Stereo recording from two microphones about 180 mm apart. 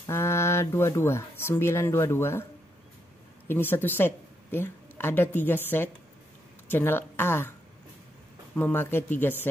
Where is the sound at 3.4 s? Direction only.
10° left (ahead or behind).